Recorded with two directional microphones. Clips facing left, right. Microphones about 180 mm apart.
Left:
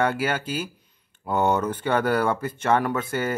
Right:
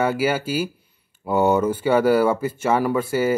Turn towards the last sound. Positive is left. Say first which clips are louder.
# right 6 dB
turn(degrees=-5)  # may be behind; listen again after turning